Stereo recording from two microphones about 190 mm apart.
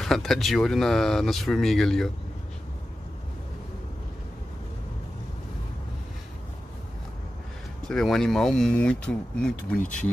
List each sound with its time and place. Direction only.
0.0 s speech: centre (ahead or behind)
7.9 s speech: centre (ahead or behind)